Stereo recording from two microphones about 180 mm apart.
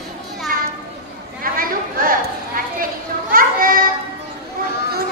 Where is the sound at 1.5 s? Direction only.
50° right (ahead or behind).